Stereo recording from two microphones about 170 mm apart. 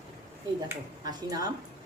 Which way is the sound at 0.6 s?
20° right (ahead or behind).